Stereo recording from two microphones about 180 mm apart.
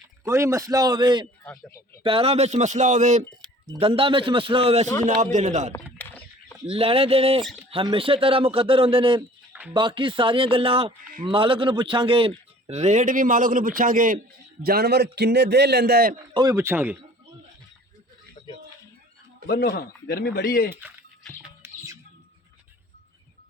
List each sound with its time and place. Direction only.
0.3 s speech: 15° right (ahead or behind)
1.5 s a man's voice: 10° left (ahead or behind)
2.0 s speech: 30° right (ahead or behind)
3.2 s a sound: 5° left (ahead or behind)
3.8 s speech: 30° right (ahead or behind)
5.7 s a sound: 10° left (ahead or behind)
6.7 s speech: 30° right (ahead or behind)
9.5 s music: 10° right (ahead or behind)
9.7 s a man's voice: 25° right (ahead or behind); by 16.2 s 55° right (ahead or behind)
16.3 s speech: 20° right (ahead or behind)
18.4 s a sound: 25° left (ahead or behind)
19.5 s speech: 60° left (ahead or behind)
21.6 s bird: 15° right (ahead or behind)